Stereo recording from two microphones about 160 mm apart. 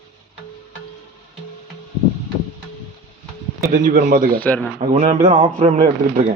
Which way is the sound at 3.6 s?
55° right (ahead or behind).